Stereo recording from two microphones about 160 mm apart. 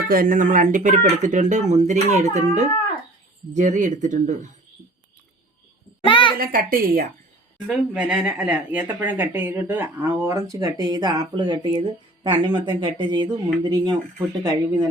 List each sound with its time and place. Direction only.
0.1 s speech: 60° right (ahead or behind)
6.1 s a sound: 30° left (ahead or behind)
6.4 s a woman's voice: 65° right (ahead or behind)
7.7 s speech: 5° right (ahead or behind); by 14.8 s 25° right (ahead or behind)